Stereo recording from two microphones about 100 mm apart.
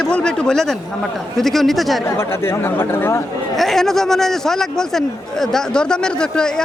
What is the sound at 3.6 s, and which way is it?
A man's voice, 5° left (ahead or behind).